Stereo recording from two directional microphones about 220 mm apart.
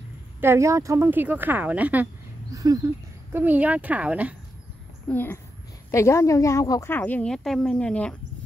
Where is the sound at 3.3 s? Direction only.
10° right (ahead or behind).